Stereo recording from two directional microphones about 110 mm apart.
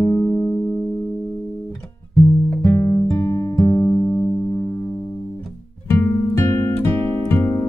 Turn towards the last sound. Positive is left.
turn(degrees=25)  # may be behind; listen again after turning